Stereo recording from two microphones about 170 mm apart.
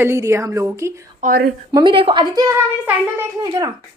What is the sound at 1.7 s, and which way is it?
A woman's voice, 30° right (ahead or behind).